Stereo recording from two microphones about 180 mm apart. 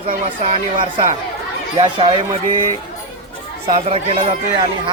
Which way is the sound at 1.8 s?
30° right (ahead or behind).